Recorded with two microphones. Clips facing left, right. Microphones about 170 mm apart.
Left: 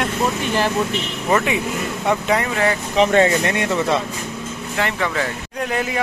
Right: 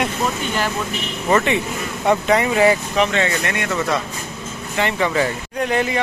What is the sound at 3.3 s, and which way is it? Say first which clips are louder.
Speech: left 4 dB; 30° left (ahead or behind).